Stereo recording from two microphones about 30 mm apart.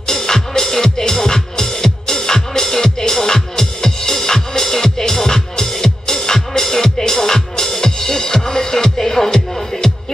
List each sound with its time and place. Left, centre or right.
0.0 s music: centre